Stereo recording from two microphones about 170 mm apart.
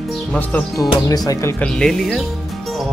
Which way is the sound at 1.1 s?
20° left (ahead or behind).